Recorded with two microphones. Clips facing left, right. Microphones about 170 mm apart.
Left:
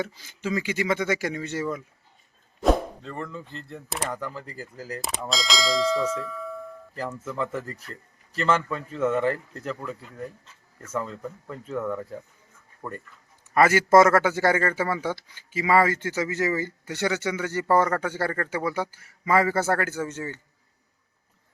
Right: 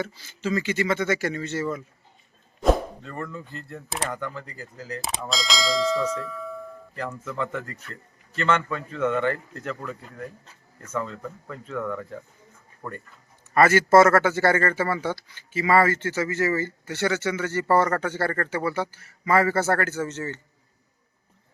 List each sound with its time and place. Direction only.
0.0 s speech: 15° left (ahead or behind)
2.6 s a sound: centre (ahead or behind)
3.7 s speech: centre (ahead or behind)
5.3 s clang: centre (ahead or behind)
7.1 s speech: 5° left (ahead or behind)
7.7 s a man's voice: 35° left (ahead or behind)
10.9 s speech: 5° left (ahead or behind)